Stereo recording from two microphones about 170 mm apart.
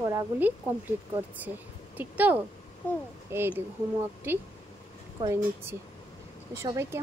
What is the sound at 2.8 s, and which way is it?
Speech, 10° left (ahead or behind).